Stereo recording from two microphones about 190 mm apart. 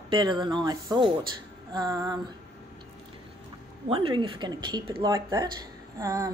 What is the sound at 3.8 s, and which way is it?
A woman's voice, 30° right (ahead or behind).